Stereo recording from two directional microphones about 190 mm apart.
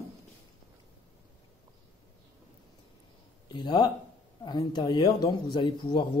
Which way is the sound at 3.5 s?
25° left (ahead or behind).